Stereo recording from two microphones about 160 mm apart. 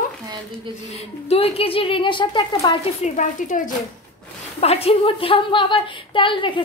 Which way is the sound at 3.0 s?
50° left (ahead or behind).